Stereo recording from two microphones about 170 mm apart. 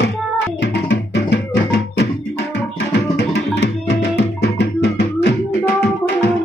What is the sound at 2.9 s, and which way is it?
Tabla, 80° left.